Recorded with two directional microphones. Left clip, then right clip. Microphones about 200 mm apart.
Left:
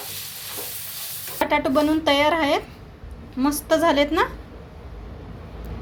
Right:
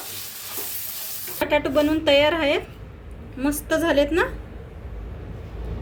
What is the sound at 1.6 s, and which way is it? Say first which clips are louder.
A woman's voice: even; 25° left (ahead or behind).